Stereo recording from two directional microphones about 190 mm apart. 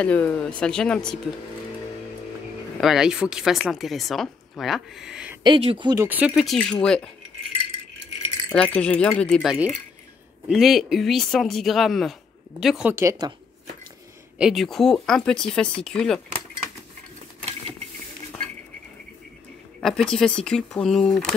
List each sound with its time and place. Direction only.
0.0 s speech: 10° left (ahead or behind)
2.8 s speech: centre (ahead or behind)
5.4 s speech: 30° right (ahead or behind)
6.0 s speech: 10° right (ahead or behind)
8.5 s speech: 10° left (ahead or behind)
12.9 s speech: 15° right (ahead or behind)
14.4 s speech: centre (ahead or behind)
19.8 s speech: centre (ahead or behind)